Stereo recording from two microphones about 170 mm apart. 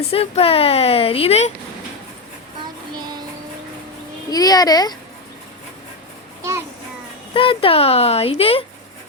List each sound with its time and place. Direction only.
0.1 s speech: 35° left (ahead or behind)
4.3 s a child's voice: 20° left (ahead or behind)
7.3 s speech: 30° left (ahead or behind)